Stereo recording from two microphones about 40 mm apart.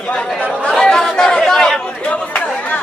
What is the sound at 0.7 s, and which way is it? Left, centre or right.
Chatter, centre.